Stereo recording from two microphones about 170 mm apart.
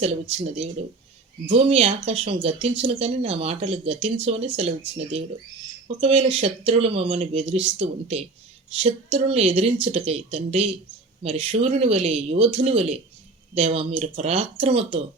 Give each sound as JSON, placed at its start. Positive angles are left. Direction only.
{"t": 0.0, "sound": "speech", "side_deg": -35}
{"t": 6.0, "sound": "speech", "side_deg": -35}